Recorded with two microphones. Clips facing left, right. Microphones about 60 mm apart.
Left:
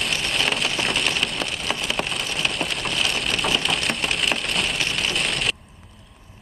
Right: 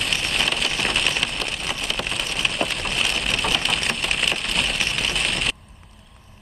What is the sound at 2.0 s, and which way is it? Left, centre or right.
Rain, centre.